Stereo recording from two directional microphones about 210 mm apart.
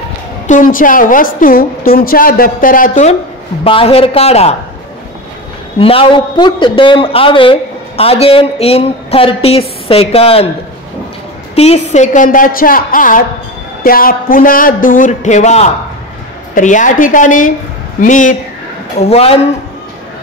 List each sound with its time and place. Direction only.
0.5 s a woman's voice: 40° left (ahead or behind)
5.8 s a woman's voice: 25° left (ahead or behind)
11.5 s a woman's voice: 30° left (ahead or behind)